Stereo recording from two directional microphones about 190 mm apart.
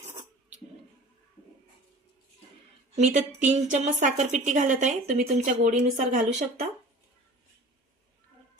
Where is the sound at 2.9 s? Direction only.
35° right (ahead or behind).